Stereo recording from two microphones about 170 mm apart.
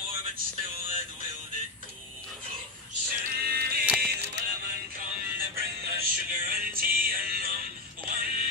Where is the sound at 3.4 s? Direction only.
65° right (ahead or behind).